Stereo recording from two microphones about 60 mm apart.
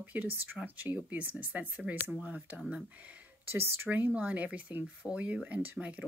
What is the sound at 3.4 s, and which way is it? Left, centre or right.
Speech, right.